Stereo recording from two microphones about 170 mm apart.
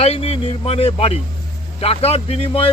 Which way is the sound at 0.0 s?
35° left (ahead or behind).